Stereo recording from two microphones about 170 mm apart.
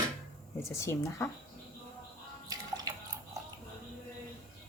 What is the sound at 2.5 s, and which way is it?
Water, 20° right (ahead or behind).